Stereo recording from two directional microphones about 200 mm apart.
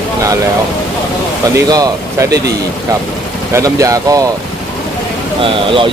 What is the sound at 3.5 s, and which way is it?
Speech, 15° right (ahead or behind).